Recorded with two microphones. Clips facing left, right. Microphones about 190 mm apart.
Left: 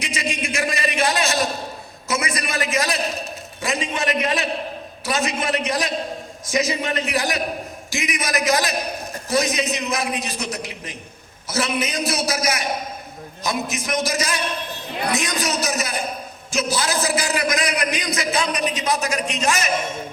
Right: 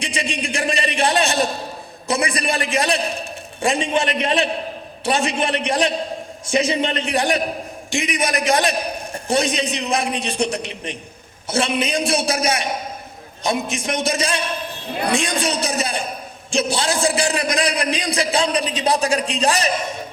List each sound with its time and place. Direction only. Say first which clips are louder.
0.0 s a man's voice: right 1 dB; 30° right (ahead or behind)